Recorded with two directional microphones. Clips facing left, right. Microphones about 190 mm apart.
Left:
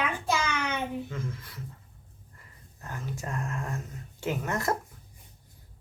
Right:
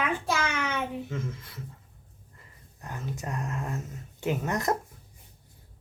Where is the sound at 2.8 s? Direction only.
20° right (ahead or behind).